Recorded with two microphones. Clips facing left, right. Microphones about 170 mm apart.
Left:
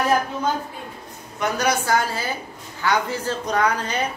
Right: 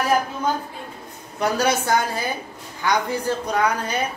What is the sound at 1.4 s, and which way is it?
A woman's voice, 30° right (ahead or behind).